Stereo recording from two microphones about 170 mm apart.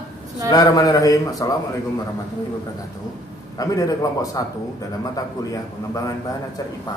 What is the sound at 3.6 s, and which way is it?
Speech, 20° left (ahead or behind).